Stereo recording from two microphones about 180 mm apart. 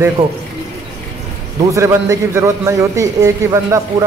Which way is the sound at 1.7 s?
15° right (ahead or behind).